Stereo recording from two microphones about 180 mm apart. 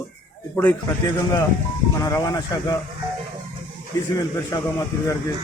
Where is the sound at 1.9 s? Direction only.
20° left (ahead or behind).